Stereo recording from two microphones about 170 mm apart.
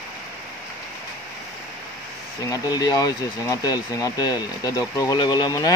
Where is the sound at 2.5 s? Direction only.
20° left (ahead or behind).